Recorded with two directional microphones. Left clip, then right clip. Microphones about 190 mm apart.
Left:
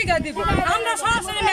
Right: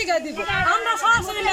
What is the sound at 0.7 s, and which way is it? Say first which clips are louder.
Speech: right 2 dB; 10° left (ahead or behind).